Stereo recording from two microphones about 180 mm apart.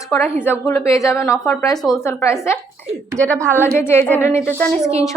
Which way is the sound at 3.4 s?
15° right (ahead or behind).